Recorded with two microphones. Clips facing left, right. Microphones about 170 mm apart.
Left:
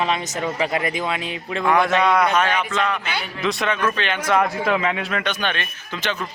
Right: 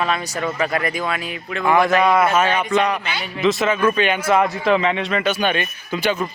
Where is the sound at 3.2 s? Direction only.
Centre (ahead or behind).